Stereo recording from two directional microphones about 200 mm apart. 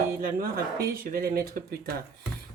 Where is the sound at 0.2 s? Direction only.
45° right (ahead or behind).